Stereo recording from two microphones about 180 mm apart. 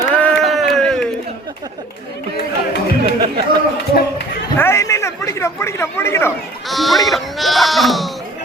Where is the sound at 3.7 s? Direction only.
65° left (ahead or behind).